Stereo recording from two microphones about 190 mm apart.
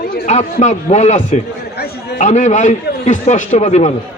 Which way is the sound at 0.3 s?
40° left (ahead or behind).